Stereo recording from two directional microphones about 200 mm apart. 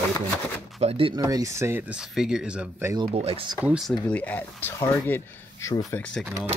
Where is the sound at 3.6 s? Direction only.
Centre (ahead or behind).